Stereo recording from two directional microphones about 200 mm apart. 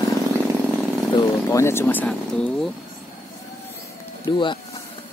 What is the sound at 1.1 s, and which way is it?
Speech, 15° left (ahead or behind).